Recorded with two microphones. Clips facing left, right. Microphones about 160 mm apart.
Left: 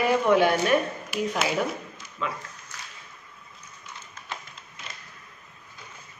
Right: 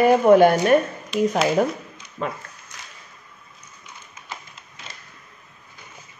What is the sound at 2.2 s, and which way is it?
Speech, 45° right (ahead or behind).